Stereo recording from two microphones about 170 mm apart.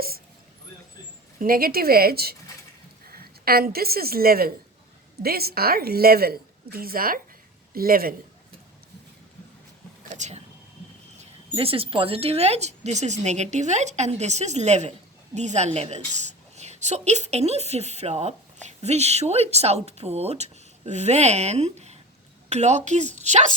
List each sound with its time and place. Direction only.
1.4 s a woman's voice: 60° right (ahead or behind)
10.0 s a sound: 45° right (ahead or behind)
11.2 s a woman's voice: 35° right (ahead or behind)